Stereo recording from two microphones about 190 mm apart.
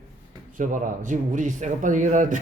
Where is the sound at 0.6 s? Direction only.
40° right (ahead or behind).